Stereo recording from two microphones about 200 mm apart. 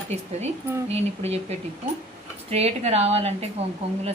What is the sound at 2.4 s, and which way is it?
A woman's voice, 30° right (ahead or behind).